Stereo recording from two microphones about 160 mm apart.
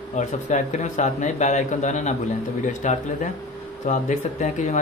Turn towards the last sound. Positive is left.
turn(degrees=50)  # may be behind; listen again after turning